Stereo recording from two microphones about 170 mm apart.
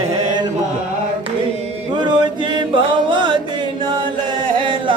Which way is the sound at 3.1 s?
30° right (ahead or behind).